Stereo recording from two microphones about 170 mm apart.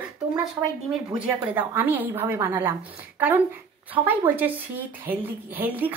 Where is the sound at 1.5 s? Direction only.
10° right (ahead or behind).